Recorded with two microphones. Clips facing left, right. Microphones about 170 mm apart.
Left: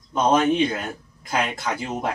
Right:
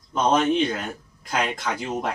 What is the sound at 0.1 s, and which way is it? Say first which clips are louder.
Speech: left 1 dB; 5° left (ahead or behind).